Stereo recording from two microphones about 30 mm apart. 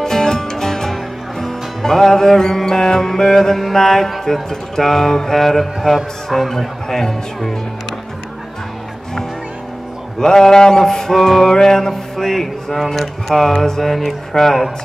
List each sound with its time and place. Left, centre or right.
0.0 s music: centre
3.7 s mantra: centre
5.8 s a man's voice: centre
6.6 s mantra: centre
10.2 s mantra: centre